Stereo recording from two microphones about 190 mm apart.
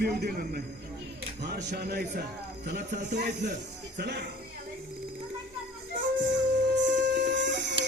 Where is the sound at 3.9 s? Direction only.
60° right (ahead or behind).